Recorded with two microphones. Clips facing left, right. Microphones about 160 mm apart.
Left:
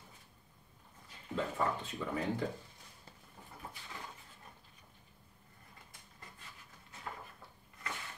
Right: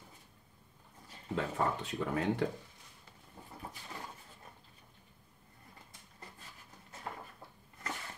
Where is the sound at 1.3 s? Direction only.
70° right (ahead or behind).